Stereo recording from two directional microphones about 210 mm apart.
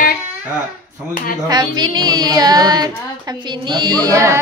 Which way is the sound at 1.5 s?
20° right (ahead or behind).